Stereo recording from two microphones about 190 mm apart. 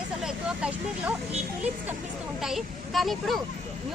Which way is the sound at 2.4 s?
Centre (ahead or behind).